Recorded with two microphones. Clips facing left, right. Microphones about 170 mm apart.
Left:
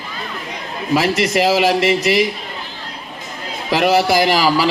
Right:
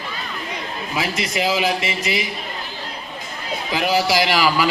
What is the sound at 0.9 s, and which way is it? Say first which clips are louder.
A man's voice: left 9 dB; 70° left (ahead or behind).